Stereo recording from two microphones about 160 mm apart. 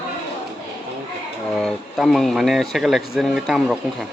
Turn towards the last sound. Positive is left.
turn(degrees=0)  # may be behind; listen again after turning